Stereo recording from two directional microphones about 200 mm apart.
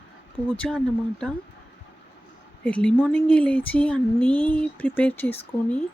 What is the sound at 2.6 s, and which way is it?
Speech, 5° left (ahead or behind).